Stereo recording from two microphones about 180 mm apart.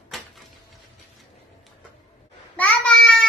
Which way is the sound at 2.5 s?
5° left (ahead or behind).